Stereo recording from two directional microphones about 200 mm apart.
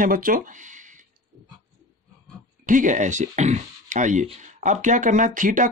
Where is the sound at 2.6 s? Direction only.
40° right (ahead or behind).